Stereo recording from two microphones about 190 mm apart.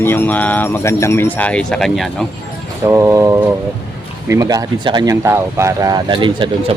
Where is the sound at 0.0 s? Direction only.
10° left (ahead or behind).